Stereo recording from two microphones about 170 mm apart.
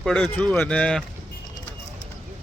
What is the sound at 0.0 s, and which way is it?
Speech, 5° left (ahead or behind).